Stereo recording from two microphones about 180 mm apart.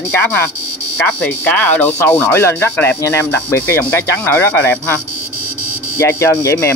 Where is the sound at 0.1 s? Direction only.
10° left (ahead or behind).